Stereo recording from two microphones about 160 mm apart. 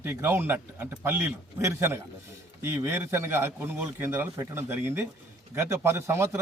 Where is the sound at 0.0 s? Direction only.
15° right (ahead or behind).